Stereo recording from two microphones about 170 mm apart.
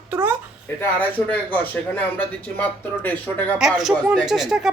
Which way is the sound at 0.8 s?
10° left (ahead or behind).